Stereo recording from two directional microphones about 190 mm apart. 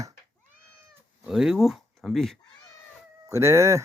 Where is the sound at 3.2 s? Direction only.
15° right (ahead or behind).